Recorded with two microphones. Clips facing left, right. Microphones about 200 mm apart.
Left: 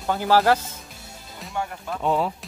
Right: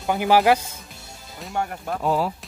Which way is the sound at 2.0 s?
5° right (ahead or behind).